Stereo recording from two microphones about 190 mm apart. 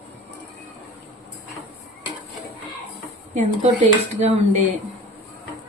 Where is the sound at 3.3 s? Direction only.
40° right (ahead or behind).